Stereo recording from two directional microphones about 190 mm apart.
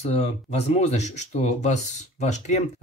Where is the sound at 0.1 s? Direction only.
35° left (ahead or behind).